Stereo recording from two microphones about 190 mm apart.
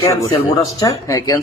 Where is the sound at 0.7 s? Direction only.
20° left (ahead or behind).